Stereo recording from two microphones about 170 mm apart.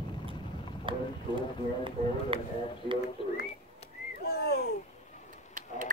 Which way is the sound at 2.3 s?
30° right (ahead or behind).